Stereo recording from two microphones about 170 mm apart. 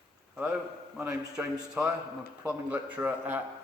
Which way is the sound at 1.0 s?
5° right (ahead or behind).